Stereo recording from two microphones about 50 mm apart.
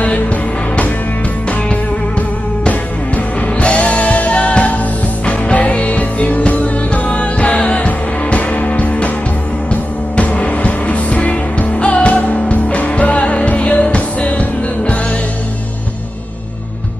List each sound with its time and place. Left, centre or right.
1.7 s music: left